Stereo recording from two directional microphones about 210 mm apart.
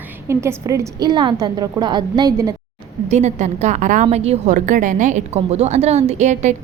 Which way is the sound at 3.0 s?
35° right (ahead or behind).